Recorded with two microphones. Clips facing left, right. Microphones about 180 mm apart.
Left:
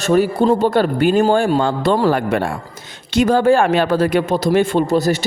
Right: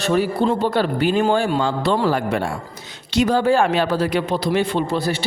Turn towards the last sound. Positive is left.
turn(degrees=40)  # may be behind; listen again after turning